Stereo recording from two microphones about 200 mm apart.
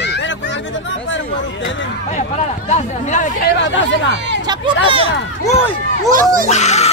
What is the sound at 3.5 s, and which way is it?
Speech, 65° left (ahead or behind).